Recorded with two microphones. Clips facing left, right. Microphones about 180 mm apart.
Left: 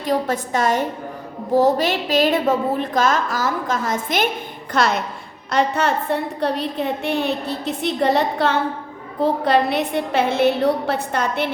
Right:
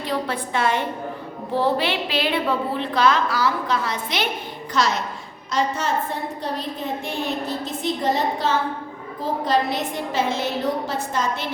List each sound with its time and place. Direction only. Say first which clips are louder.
0.0 s a woman's voice: left 5 dB; 45° left (ahead or behind)
4.7 s a woman's voice: left 3 dB; 55° left (ahead or behind)